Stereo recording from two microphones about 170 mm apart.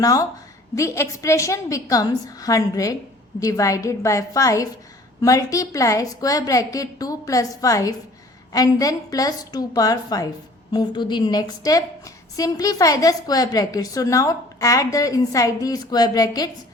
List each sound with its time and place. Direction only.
0.0 s a woman's voice: 20° left (ahead or behind)